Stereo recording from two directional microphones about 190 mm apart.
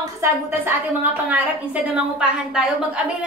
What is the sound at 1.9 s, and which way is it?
Speech, 5° right (ahead or behind).